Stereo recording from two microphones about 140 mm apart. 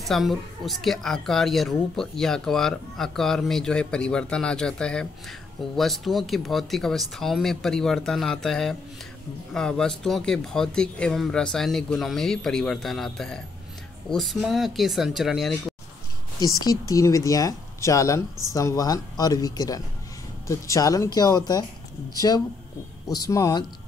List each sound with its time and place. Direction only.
0.0 s speech: centre (ahead or behind)
16.3 s speech: 25° left (ahead or behind)